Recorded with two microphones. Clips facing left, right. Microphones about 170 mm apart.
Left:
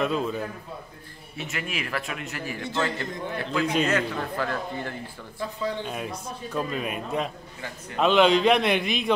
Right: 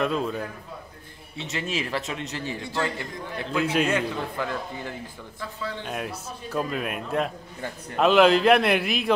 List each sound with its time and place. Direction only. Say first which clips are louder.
0.0 s a man's voice: even; centre (ahead or behind)
1.3 s a man's voice: right 3 dB; 20° right (ahead or behind)
5.4 s speech: left 4 dB; 15° left (ahead or behind)
5.9 s a man's voice: even; centre (ahead or behind)